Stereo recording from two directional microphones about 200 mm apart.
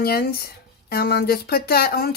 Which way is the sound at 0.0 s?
50° left (ahead or behind).